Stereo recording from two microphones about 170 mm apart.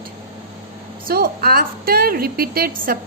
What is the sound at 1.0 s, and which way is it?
A woman's voice, 60° right (ahead or behind).